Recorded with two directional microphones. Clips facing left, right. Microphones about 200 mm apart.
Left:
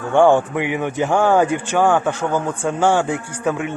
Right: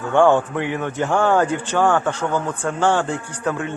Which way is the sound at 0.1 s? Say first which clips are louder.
Left 2 dB; 15° left (ahead or behind).